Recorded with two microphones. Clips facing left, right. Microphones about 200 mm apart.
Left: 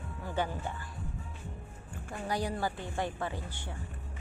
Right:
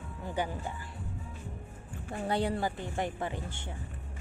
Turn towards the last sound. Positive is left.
turn(degrees=-20)  # may be behind; listen again after turning